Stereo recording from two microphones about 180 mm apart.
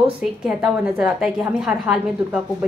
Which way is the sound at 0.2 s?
5° right (ahead or behind).